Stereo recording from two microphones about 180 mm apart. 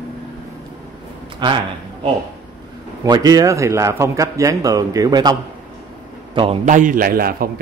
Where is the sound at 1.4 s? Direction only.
25° right (ahead or behind).